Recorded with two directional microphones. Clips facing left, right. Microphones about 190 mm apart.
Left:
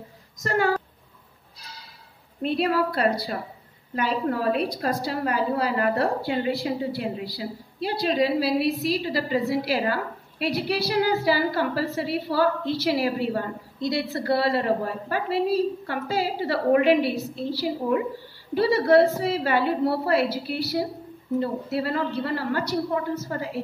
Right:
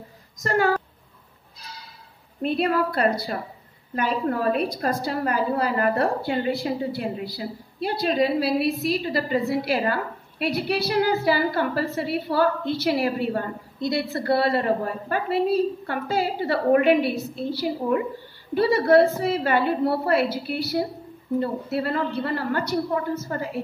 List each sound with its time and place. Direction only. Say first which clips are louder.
2.4 s a woman's voice: right 1 dB; 50° right (ahead or behind)